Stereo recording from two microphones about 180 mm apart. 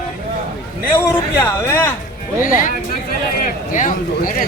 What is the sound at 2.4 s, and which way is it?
A man's voice, 45° left (ahead or behind).